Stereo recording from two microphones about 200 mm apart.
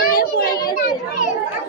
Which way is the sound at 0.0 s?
45° left (ahead or behind).